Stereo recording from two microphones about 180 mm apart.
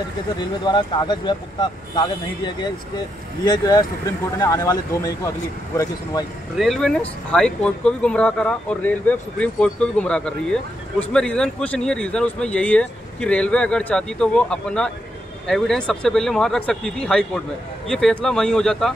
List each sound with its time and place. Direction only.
0.4 s speech: 25° left (ahead or behind)
6.5 s speech: centre (ahead or behind)